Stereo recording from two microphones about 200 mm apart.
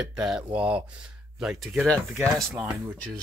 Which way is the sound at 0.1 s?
5° right (ahead or behind).